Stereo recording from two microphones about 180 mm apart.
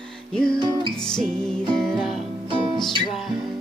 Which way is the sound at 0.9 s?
5° left (ahead or behind).